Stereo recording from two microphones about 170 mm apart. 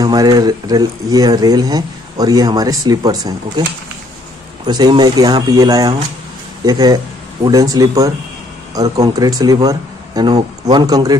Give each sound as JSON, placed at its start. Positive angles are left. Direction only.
{"t": 0.0, "sound": "speech", "side_deg": -20}
{"t": 4.6, "sound": "speech", "side_deg": -25}